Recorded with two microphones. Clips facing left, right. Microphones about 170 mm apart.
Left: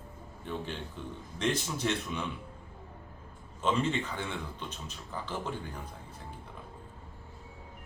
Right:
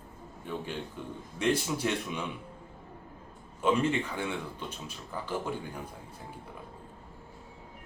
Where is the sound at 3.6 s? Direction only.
10° right (ahead or behind).